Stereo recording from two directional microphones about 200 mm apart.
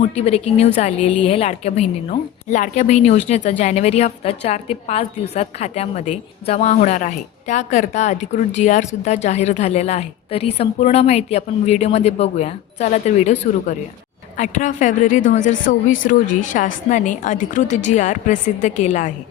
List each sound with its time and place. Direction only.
0.0 s a woman's voice: 30° left (ahead or behind)